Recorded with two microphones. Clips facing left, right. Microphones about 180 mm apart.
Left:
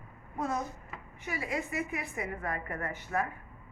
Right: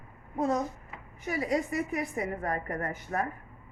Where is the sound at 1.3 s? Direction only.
40° right (ahead or behind).